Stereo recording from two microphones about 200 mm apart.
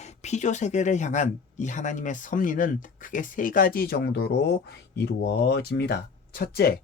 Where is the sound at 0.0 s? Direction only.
35° left (ahead or behind).